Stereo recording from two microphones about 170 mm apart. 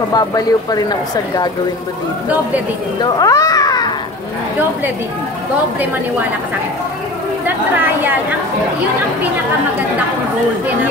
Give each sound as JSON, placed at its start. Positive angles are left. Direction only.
{"t": 0.1, "sound": "speech", "side_deg": 20}
{"t": 2.2, "sound": "speech", "side_deg": -10}
{"t": 3.0, "sound": "speech", "side_deg": 20}
{"t": 7.4, "sound": "a woman's voice", "side_deg": -10}